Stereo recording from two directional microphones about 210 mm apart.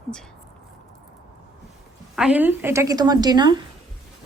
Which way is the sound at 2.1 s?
5° right (ahead or behind).